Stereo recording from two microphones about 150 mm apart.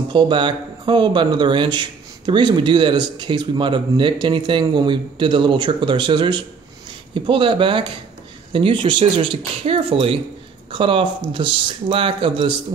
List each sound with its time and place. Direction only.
0.1 s a man's voice: 30° right (ahead or behind)